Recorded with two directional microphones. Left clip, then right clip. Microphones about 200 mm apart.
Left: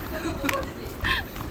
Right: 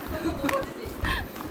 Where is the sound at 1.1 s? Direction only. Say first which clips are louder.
Left 4 dB; 20° right (ahead or behind).